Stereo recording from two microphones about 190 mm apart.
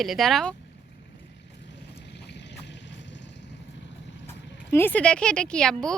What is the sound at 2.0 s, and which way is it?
Vehicle, 65° left (ahead or behind).